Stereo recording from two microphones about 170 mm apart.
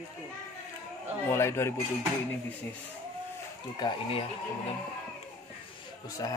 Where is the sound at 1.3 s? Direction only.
15° left (ahead or behind).